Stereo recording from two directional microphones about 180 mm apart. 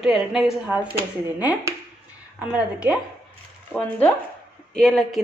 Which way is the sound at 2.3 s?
5° right (ahead or behind).